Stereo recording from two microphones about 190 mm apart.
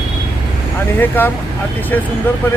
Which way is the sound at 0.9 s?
10° left (ahead or behind).